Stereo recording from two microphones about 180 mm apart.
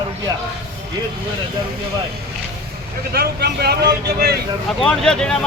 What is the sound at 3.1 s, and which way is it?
Speech, 60° right (ahead or behind).